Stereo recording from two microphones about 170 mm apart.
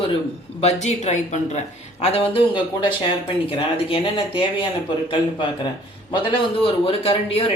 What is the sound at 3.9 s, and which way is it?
Speech, 30° left (ahead or behind).